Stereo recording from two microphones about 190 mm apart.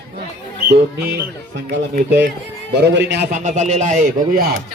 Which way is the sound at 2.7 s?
65° right (ahead or behind).